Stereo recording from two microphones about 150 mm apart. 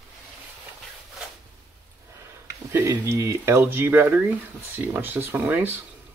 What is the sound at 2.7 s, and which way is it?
Speech, 15° right (ahead or behind).